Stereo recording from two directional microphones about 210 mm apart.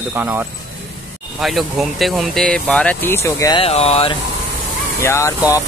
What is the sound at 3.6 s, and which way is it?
Speech, 30° left (ahead or behind).